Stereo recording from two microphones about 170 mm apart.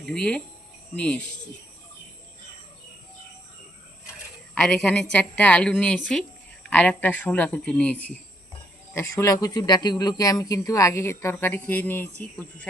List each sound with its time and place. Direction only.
0.0 s a woman's voice: 5° left (ahead or behind)
4.5 s a woman's voice: 5° left (ahead or behind)